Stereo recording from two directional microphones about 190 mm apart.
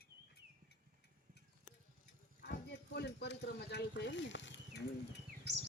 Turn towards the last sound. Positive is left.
turn(degrees=70)  # may be behind; listen again after turning